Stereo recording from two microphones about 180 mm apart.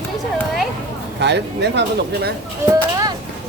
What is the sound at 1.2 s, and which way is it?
Speech, 70° right (ahead or behind).